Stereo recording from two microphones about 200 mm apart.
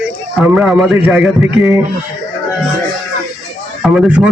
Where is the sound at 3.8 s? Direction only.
Centre (ahead or behind).